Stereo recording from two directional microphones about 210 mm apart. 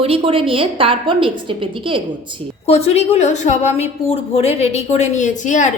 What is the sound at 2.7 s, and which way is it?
A woman's voice, 30° left (ahead or behind).